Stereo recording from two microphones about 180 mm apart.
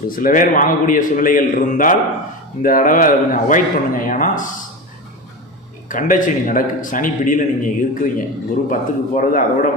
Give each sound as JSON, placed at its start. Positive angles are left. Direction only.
{"t": 0.2, "sound": "a man's voice", "side_deg": 50}
{"t": 5.9, "sound": "a man's voice", "side_deg": 50}